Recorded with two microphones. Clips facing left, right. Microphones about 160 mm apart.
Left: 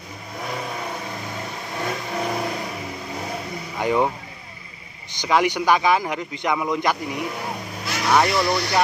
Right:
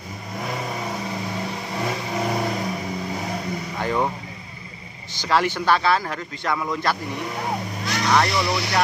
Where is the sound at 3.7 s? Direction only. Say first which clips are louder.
Left 4 dB; 15° left (ahead or behind).